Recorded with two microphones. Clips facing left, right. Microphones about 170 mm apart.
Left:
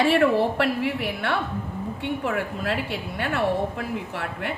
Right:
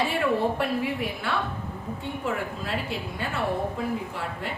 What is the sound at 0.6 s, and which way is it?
Speech, 70° left (ahead or behind).